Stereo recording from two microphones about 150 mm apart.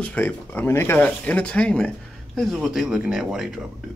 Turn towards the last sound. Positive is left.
turn(degrees=-5)  # may be behind; listen again after turning